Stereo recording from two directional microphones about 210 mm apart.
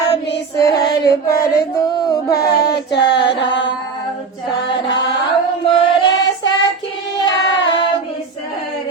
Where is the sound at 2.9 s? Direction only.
55° left (ahead or behind).